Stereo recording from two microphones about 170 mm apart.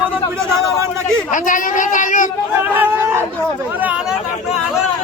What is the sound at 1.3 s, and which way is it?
Speech, 50° left (ahead or behind).